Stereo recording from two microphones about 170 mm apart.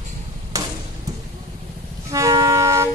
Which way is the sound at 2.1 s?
20° right (ahead or behind).